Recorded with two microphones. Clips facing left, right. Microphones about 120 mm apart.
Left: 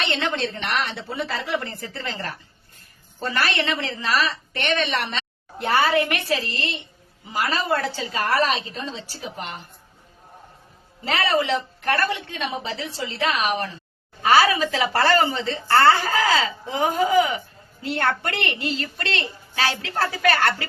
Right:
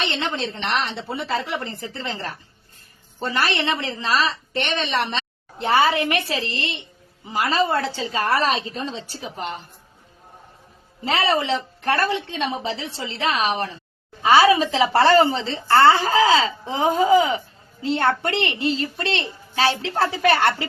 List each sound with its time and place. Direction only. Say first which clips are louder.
0.0 s a woman's voice: left 1 dB; 25° right (ahead or behind)
3.2 s a woman's voice: right 1 dB; 25° right (ahead or behind)
11.2 s a woman's voice: even; 25° right (ahead or behind)